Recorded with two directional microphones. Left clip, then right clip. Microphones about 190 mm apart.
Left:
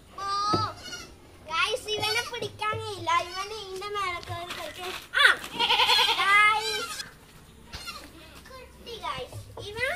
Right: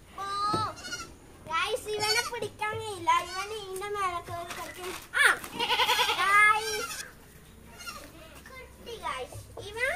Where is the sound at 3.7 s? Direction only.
25° right (ahead or behind).